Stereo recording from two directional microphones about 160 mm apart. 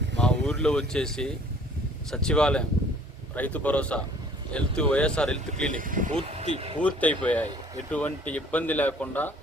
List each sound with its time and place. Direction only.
0.2 s speech: 5° left (ahead or behind)
5.7 s speech: 55° right (ahead or behind)
6.5 s speech: 40° right (ahead or behind)
6.8 s speech: 10° left (ahead or behind)